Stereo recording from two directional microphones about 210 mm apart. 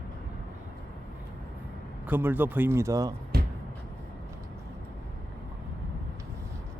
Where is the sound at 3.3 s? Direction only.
45° right (ahead or behind).